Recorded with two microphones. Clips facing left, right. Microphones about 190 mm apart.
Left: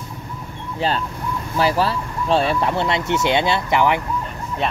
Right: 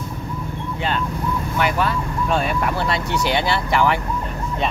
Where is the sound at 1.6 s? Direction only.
30° left (ahead or behind).